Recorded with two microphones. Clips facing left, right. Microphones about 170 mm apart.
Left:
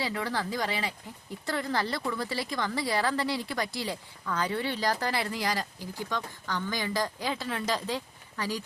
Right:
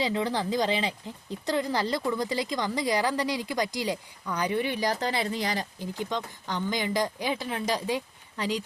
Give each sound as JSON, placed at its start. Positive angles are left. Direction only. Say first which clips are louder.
{"t": 0.0, "sound": "speech", "louder": "right 4 dB", "side_deg": -20}